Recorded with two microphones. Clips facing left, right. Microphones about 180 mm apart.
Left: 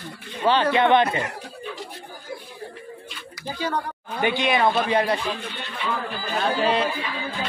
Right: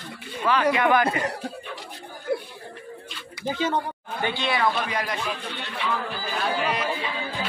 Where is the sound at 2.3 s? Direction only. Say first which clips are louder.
Right 10 dB; 65° right (ahead or behind).